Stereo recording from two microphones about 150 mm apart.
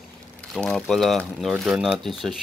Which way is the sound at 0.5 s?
5° left (ahead or behind).